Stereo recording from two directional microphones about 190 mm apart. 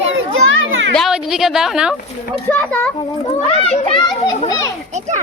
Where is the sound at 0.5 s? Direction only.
80° right.